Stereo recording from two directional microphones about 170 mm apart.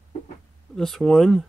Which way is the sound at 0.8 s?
Centre (ahead or behind).